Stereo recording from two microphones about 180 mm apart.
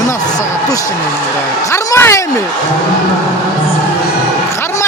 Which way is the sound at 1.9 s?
15° left (ahead or behind).